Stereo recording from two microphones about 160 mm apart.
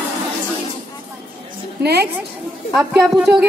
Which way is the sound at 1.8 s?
90° right.